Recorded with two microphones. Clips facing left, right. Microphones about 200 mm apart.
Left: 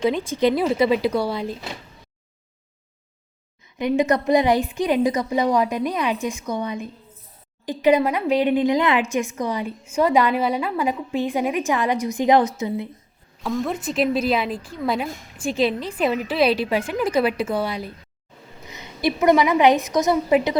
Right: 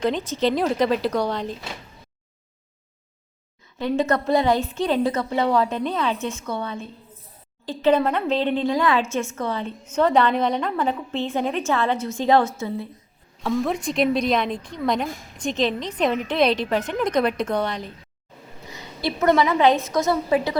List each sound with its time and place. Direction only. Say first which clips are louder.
0.0 s speech: left 2 dB; 10° left (ahead or behind)
3.8 s speech: left 2 dB; 15° left (ahead or behind)
13.4 s speech: right 1 dB; centre (ahead or behind); by 20.6 s 20° left (ahead or behind)